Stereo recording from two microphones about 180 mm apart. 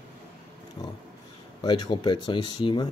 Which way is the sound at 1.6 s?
25° left (ahead or behind).